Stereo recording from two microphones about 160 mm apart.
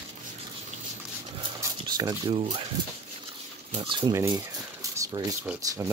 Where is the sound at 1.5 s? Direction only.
25° right (ahead or behind).